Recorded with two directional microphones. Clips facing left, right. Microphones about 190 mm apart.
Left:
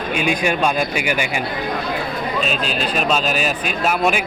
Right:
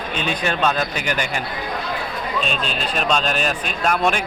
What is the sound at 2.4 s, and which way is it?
Speech, 5° left (ahead or behind).